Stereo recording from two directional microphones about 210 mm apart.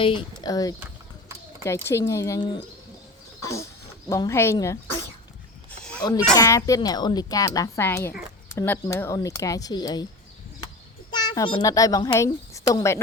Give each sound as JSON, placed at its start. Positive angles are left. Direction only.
{"t": 0.0, "sound": "speech", "side_deg": 25}
{"t": 3.4, "sound": "a sound", "side_deg": 15}
{"t": 4.1, "sound": "speech", "side_deg": 15}
{"t": 5.8, "sound": "a sound", "side_deg": 5}
{"t": 6.3, "sound": "speech", "side_deg": 15}
{"t": 11.1, "sound": "a child's voice", "side_deg": 20}